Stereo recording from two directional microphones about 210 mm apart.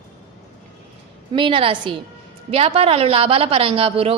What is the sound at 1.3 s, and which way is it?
A woman's voice, 25° right (ahead or behind).